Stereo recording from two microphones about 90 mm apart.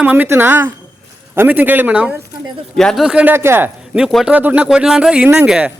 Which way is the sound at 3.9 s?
5° right (ahead or behind).